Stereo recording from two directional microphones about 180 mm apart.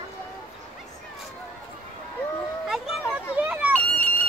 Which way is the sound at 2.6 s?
5° right (ahead or behind).